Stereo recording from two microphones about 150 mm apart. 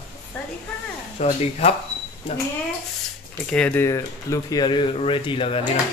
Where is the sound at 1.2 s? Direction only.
45° left (ahead or behind).